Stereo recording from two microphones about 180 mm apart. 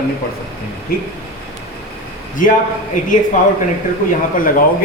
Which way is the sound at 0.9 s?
55° left (ahead or behind).